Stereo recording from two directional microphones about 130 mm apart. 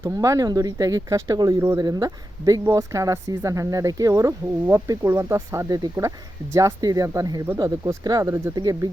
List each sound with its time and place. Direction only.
0.0 s speech: 25° right (ahead or behind)